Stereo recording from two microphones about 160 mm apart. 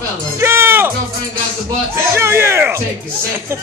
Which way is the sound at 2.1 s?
15° right (ahead or behind).